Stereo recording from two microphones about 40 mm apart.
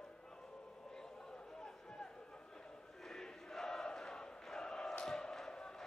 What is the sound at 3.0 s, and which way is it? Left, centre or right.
Chant, centre.